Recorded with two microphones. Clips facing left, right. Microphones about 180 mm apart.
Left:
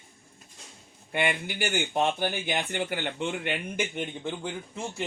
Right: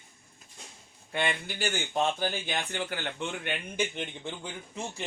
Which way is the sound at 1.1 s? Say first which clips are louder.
Left 3 dB; 15° left (ahead or behind).